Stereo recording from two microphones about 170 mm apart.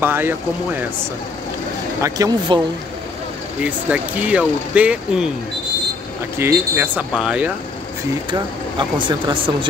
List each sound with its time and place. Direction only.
0.0 s speech: 10° right (ahead or behind)
2.0 s speech: 20° right (ahead or behind)
3.6 s speech: 10° right (ahead or behind)
6.3 s speech: 15° right (ahead or behind)
8.3 s speech: 25° right (ahead or behind)